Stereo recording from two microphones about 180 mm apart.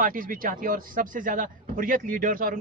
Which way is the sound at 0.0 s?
50° right (ahead or behind).